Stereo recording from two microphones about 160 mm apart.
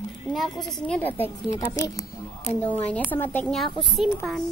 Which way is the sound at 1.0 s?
10° left (ahead or behind).